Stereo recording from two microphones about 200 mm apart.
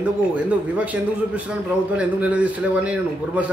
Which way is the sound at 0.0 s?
5° right (ahead or behind).